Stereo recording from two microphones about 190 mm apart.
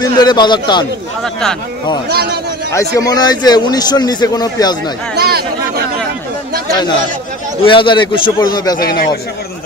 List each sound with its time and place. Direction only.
0.0 s a man's voice: 20° left (ahead or behind)
1.2 s speech: 5° left (ahead or behind)
2.0 s a man's voice: 55° right (ahead or behind)
2.7 s a man's voice: 15° left (ahead or behind)
5.1 s chatter: 55° right (ahead or behind)
7.6 s a man's voice: 25° left (ahead or behind)
8.7 s a man's voice: 50° left (ahead or behind)